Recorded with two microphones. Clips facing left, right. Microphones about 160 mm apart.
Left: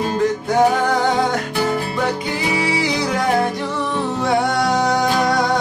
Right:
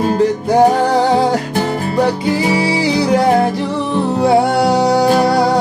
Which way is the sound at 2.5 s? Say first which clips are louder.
Right 5 dB; 30° right (ahead or behind).